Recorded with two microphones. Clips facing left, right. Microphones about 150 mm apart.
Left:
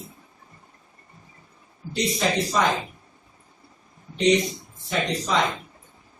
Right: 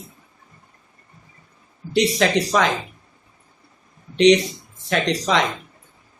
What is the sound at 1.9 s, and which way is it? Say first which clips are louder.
Speech: right 6 dB; 90° right.